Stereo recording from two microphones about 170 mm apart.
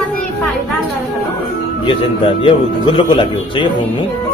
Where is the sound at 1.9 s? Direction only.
30° left (ahead or behind).